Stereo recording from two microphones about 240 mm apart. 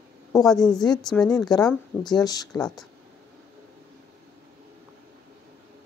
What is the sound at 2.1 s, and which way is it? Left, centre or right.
Speech, centre.